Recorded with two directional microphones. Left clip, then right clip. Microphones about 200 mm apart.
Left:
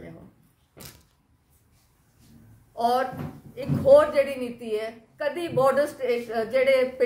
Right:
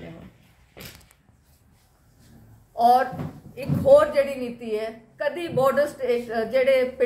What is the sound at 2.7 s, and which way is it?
A woman's voice, 5° left (ahead or behind).